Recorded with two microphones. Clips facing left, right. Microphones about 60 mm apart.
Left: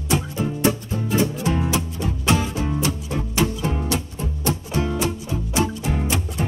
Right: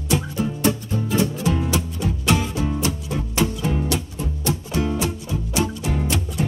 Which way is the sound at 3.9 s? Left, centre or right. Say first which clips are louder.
Even; left.